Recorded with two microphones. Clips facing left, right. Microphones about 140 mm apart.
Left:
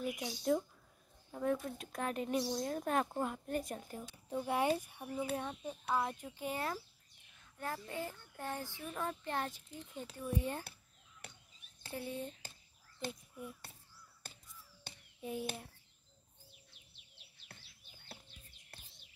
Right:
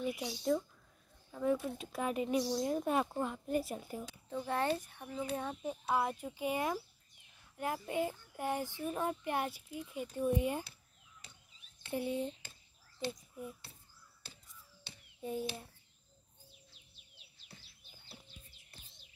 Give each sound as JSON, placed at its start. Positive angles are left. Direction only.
{"t": 0.0, "sound": "speech", "side_deg": -5}
{"t": 1.4, "sound": "speech", "side_deg": 0}
{"t": 3.5, "sound": "speech", "side_deg": -5}
{"t": 4.4, "sound": "speech", "side_deg": 10}
{"t": 5.3, "sound": "speech", "side_deg": 0}
{"t": 11.2, "sound": "chop", "side_deg": 65}
{"t": 11.9, "sound": "speech", "side_deg": -20}
{"t": 13.1, "sound": "a child's voice", "side_deg": 0}
{"t": 14.2, "sound": "crow", "side_deg": 50}
{"t": 15.1, "sound": "a child's voice", "side_deg": 0}
{"t": 17.5, "sound": "bird", "side_deg": 60}